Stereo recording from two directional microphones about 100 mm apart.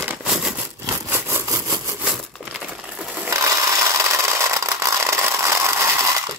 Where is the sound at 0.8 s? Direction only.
25° right (ahead or behind).